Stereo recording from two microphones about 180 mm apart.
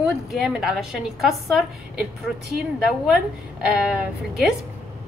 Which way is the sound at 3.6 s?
5° right (ahead or behind).